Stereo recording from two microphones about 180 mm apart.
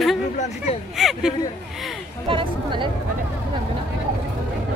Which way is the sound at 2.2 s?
30° right (ahead or behind).